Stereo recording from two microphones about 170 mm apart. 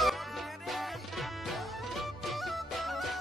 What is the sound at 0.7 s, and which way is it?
Music, centre (ahead or behind).